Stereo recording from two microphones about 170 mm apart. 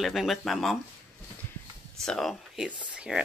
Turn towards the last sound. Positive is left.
turn(degrees=-5)  # may be behind; listen again after turning